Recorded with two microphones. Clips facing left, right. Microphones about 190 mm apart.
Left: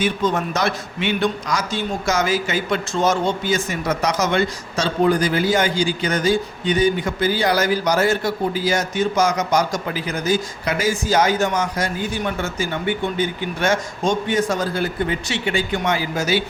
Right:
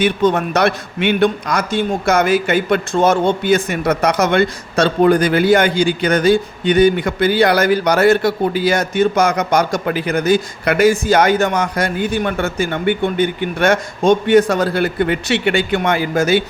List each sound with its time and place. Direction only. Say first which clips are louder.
0.0 s a man's voice: right 5 dB; 65° right (ahead or behind)